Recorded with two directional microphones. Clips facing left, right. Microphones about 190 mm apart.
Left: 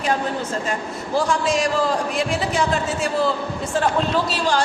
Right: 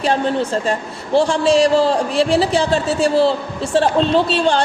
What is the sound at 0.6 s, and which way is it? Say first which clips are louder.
A man's voice: right 4 dB; 30° right (ahead or behind).